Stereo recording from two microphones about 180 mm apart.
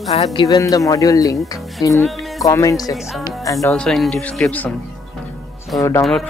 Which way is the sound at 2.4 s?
20° left (ahead or behind).